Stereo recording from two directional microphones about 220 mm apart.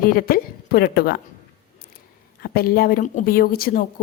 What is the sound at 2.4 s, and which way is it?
A woman's voice, 45° left (ahead or behind).